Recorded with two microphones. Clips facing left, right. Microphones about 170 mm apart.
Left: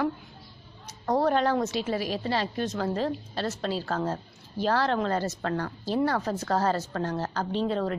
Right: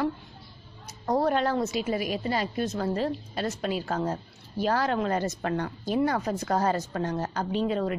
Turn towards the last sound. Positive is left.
turn(degrees=-10)  # may be behind; listen again after turning